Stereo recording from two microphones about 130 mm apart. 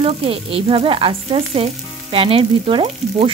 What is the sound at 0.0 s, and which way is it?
Speech, 45° right (ahead or behind).